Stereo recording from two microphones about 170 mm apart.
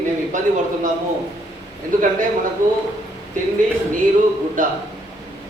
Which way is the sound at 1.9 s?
50° right (ahead or behind).